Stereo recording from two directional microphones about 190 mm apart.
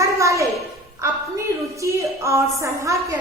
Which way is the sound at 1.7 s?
15° right (ahead or behind).